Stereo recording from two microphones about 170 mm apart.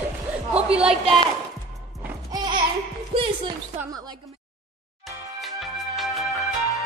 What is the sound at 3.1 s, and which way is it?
Music, 35° right (ahead or behind).